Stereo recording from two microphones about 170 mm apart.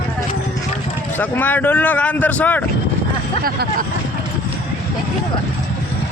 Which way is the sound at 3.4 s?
60° right (ahead or behind).